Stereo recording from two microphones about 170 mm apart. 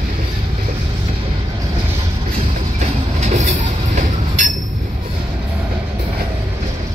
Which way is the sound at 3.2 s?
40° right (ahead or behind).